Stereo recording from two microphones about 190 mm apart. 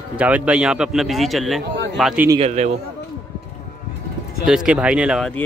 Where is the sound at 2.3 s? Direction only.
35° right (ahead or behind).